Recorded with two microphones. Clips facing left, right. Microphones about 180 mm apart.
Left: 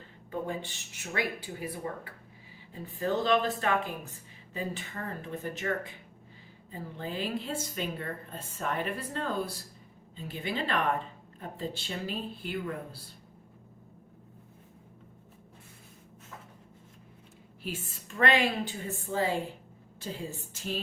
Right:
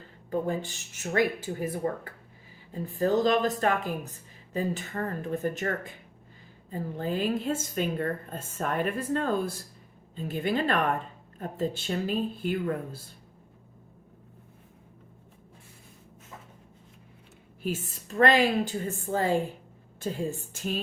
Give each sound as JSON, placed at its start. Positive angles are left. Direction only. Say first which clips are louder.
{"t": 0.3, "sound": "a woman's voice", "louder": "right 6 dB", "side_deg": -45}
{"t": 17.6, "sound": "a woman's voice", "louder": "right 6 dB", "side_deg": -40}